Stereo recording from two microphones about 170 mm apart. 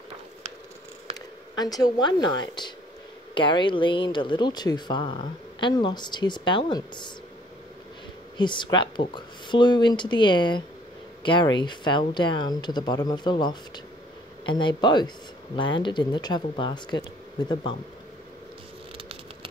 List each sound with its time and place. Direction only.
1.5 s speech: 25° left (ahead or behind)
8.4 s speech: 25° left (ahead or behind)